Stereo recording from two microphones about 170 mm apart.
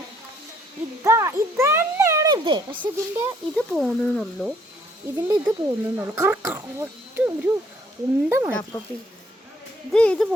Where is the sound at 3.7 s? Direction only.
5° right (ahead or behind).